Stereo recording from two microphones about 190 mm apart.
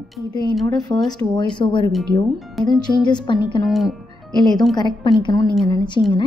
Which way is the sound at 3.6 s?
Centre (ahead or behind).